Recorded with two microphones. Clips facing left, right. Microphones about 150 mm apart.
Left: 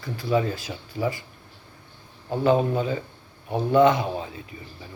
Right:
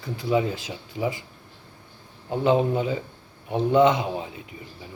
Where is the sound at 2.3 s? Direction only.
20° right (ahead or behind).